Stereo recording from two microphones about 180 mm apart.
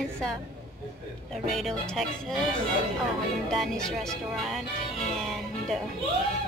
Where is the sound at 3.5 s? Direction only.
Centre (ahead or behind).